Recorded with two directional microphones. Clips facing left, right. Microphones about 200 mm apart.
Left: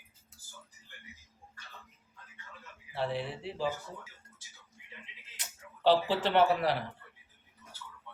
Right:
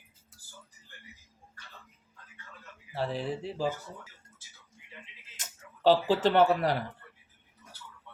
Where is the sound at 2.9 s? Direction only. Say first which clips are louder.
Right 2 dB; 40° right (ahead or behind).